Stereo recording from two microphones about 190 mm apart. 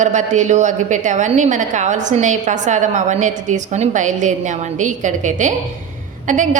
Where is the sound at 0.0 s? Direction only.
40° right (ahead or behind).